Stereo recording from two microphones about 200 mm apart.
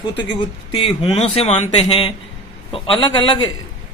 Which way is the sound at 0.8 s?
30° left (ahead or behind).